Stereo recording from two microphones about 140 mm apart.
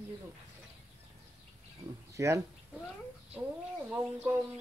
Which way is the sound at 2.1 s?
20° right (ahead or behind).